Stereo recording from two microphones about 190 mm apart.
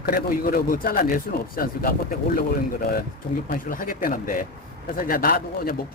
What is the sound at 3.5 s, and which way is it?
A man's voice, 50° left (ahead or behind).